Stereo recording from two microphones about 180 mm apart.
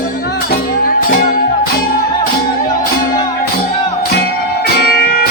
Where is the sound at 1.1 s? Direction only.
50° left (ahead or behind).